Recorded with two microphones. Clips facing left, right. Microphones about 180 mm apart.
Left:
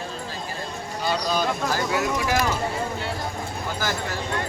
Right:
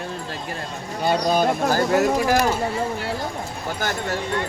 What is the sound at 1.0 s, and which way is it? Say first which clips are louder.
Speech: right 5 dB; 55° right (ahead or behind).